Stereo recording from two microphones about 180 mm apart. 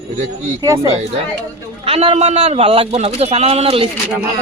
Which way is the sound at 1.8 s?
35° right (ahead or behind).